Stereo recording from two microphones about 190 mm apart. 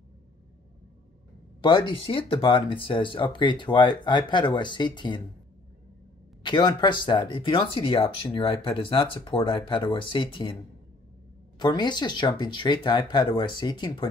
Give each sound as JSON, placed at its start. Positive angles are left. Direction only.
{"t": 1.6, "sound": "speech", "side_deg": 25}
{"t": 6.4, "sound": "speech", "side_deg": 25}
{"t": 11.5, "sound": "speech", "side_deg": 25}